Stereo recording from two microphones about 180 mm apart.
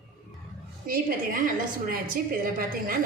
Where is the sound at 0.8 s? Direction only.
50° right (ahead or behind).